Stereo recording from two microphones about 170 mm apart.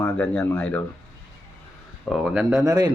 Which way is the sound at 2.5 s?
20° right (ahead or behind).